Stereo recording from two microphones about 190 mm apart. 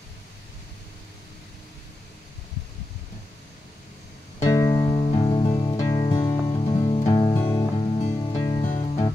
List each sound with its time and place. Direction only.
4.4 s music: 20° left (ahead or behind)
8.6 s music: 40° left (ahead or behind)